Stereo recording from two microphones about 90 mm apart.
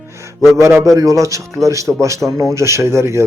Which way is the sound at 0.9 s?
40° right (ahead or behind).